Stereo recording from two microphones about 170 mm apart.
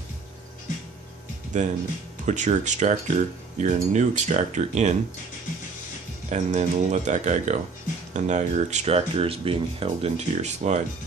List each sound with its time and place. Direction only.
1.6 s speech: 45° right (ahead or behind)
6.3 s speech: 45° right (ahead or behind)